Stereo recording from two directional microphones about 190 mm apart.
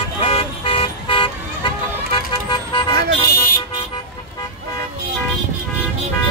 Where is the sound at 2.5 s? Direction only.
25° left (ahead or behind).